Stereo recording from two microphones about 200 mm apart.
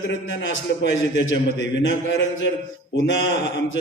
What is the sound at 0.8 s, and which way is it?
A man's voice, 65° left (ahead or behind).